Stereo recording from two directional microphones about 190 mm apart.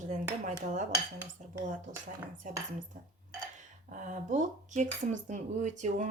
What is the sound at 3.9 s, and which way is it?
Speech, 40° right (ahead or behind).